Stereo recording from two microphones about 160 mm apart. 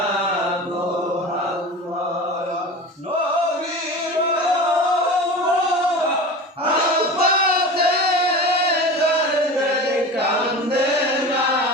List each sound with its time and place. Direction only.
7.2 s singing: 75° right (ahead or behind)